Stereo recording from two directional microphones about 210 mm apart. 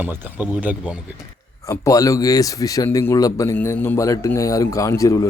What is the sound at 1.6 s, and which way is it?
A man's voice, 15° left (ahead or behind).